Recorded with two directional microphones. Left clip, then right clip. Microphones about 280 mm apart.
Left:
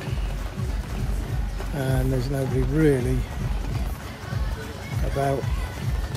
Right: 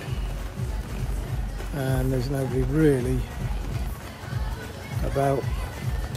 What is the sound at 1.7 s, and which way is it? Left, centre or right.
Speech, centre.